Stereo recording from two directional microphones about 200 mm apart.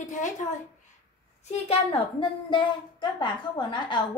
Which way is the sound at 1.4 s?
30° left (ahead or behind).